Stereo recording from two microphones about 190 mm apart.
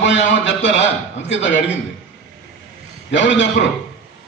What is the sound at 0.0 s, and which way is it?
A man's voice, 70° left (ahead or behind).